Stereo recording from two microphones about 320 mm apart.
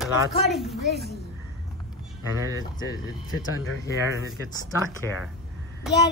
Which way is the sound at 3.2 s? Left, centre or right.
Left.